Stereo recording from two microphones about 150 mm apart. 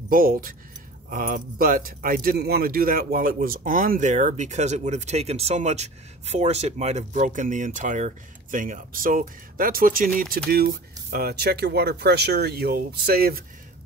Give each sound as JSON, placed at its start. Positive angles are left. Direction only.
{"t": 0.1, "sound": "speech", "side_deg": -70}
{"t": 10.5, "sound": "speech", "side_deg": -90}